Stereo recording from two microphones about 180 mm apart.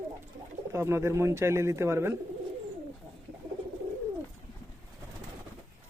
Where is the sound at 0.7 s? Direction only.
15° right (ahead or behind).